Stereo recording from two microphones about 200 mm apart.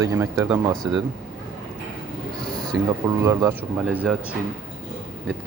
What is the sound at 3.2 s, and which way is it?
Speech, 15° right (ahead or behind).